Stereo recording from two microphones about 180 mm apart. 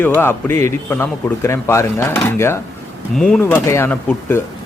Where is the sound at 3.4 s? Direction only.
15° left (ahead or behind).